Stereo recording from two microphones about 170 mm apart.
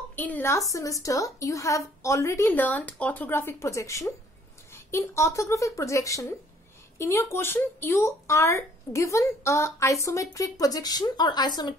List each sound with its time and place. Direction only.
0.1 s speech: 10° left (ahead or behind)